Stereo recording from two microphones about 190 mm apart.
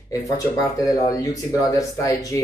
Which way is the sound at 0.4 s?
15° left (ahead or behind).